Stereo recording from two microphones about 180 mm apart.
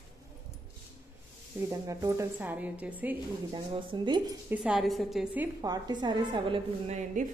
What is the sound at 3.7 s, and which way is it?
Speech, 25° right (ahead or behind).